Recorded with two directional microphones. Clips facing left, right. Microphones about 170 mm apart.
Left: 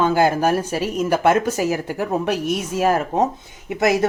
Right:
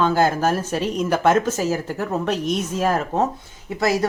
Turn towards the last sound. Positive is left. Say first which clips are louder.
# left 2 dB
turn(degrees=20)  # may be behind; listen again after turning